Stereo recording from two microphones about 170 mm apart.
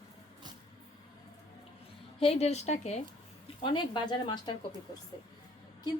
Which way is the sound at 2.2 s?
40° left (ahead or behind).